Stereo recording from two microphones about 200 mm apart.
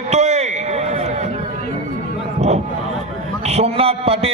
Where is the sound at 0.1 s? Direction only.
35° right (ahead or behind).